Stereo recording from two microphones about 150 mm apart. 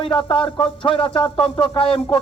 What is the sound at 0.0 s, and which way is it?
A man's voice, 35° left (ahead or behind).